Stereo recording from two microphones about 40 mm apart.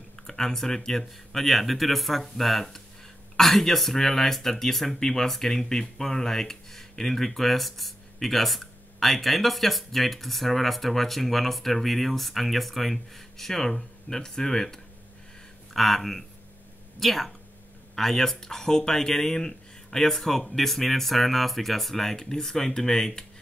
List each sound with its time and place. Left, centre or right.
0.3 s speech: centre
15.7 s speech: centre